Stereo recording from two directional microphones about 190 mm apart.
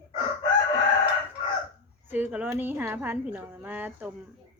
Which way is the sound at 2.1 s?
10° right (ahead or behind).